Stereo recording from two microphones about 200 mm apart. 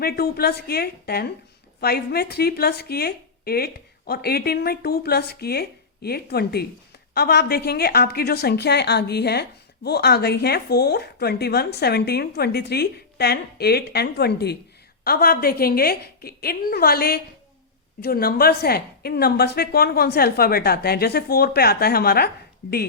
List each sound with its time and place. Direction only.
0.0 s a woman's voice: 50° left (ahead or behind)